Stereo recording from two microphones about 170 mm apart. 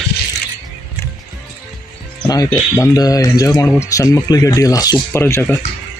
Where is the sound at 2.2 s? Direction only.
20° left (ahead or behind).